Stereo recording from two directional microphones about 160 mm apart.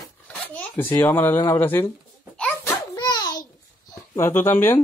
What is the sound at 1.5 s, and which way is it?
Speech, 15° left (ahead or behind).